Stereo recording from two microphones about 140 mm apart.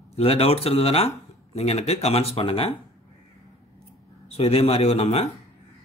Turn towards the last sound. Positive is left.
turn(degrees=45)  # may be behind; listen again after turning